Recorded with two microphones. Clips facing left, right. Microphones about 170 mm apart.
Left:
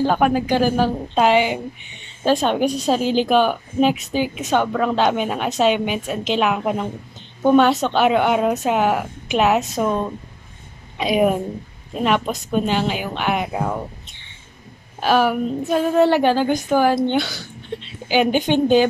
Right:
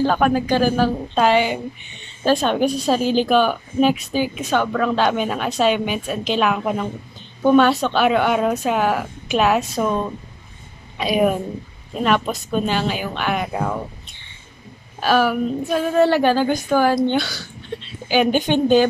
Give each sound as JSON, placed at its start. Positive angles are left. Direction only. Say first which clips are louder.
{"t": 0.0, "sound": "a woman's voice", "louder": "even", "side_deg": 15}
{"t": 11.0, "sound": "a woman's voice", "louder": "left 1 dB", "side_deg": 20}
{"t": 15.0, "sound": "a woman's voice", "louder": "even", "side_deg": 20}